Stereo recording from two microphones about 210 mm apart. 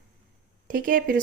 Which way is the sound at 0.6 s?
40° right (ahead or behind).